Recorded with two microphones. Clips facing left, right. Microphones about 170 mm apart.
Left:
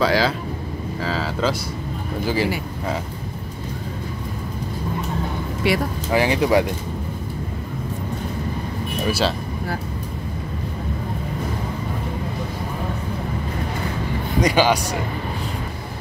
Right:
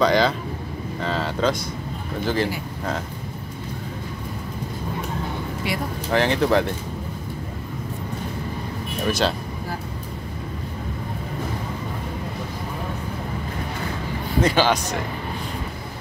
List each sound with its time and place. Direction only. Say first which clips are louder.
0.0 s speech: right 1 dB; 5° left (ahead or behind)
5.6 s speech: left 8 dB; 75° left (ahead or behind)
6.1 s speech: left 1 dB; 10° left (ahead or behind)
9.0 s speech: even; 10° left (ahead or behind)
14.4 s speech: left 2 dB; 10° left (ahead or behind)